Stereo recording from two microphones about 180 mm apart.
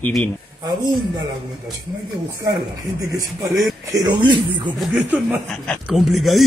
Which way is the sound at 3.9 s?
25° right (ahead or behind).